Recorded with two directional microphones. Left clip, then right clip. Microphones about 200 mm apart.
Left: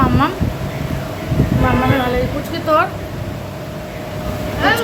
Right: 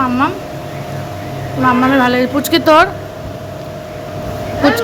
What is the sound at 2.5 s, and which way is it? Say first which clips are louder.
Speech: right 7 dB; 40° right (ahead or behind).